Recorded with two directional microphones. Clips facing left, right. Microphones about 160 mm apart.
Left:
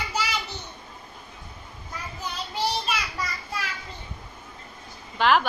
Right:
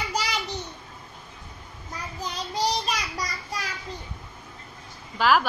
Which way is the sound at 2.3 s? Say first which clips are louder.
Right 2 dB; 40° right (ahead or behind).